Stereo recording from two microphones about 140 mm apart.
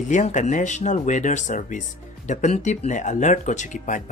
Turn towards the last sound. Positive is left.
turn(degrees=60)  # may be behind; listen again after turning